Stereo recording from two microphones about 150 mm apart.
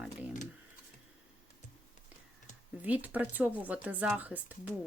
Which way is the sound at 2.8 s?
10° right (ahead or behind).